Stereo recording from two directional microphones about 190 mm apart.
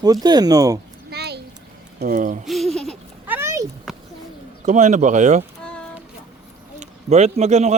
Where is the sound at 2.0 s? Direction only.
50° right (ahead or behind).